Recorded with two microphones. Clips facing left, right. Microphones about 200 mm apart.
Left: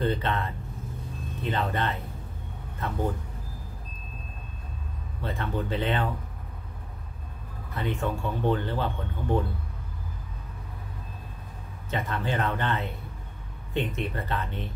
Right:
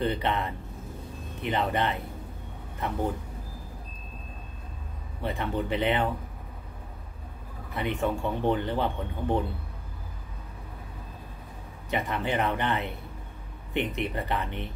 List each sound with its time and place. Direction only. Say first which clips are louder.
0.0 s speech: even; 15° right (ahead or behind)
5.2 s speech: right 1 dB; 15° right (ahead or behind)
7.7 s speech: right 1 dB; 15° right (ahead or behind)
11.9 s speech: right 1 dB; 15° right (ahead or behind)